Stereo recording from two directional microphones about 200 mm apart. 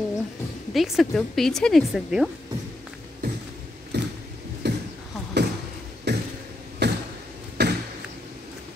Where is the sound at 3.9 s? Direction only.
60° right (ahead or behind).